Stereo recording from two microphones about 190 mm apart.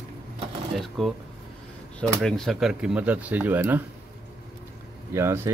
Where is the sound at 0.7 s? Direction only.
Centre (ahead or behind).